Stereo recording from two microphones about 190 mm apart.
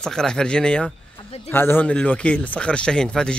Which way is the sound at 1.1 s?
30° left (ahead or behind).